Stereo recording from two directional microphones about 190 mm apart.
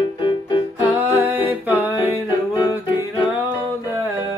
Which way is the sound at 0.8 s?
15° right (ahead or behind).